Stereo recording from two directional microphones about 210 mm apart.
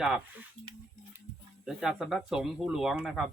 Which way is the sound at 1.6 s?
Centre (ahead or behind).